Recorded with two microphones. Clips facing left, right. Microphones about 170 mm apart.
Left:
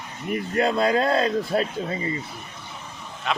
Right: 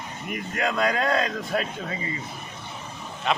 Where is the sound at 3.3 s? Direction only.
Centre (ahead or behind).